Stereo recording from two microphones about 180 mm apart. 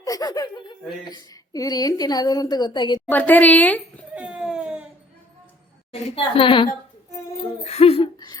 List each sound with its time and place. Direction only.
0.0 s a woman's voice: 20° left (ahead or behind)
3.1 s a woman's voice: 10° left (ahead or behind)
4.1 s baby cry: 5° right (ahead or behind)
5.9 s a woman's voice: 30° left (ahead or behind)